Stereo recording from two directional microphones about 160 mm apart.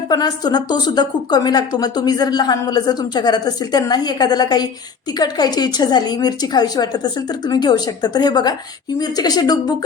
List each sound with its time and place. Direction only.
0.1 s speech: 25° left (ahead or behind)